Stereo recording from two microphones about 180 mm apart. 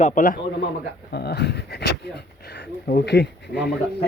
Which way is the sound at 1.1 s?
65° left (ahead or behind).